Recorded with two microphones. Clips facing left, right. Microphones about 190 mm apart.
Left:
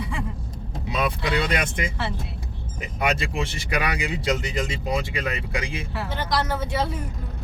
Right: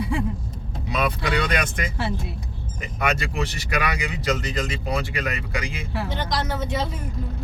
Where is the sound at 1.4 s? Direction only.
25° left (ahead or behind).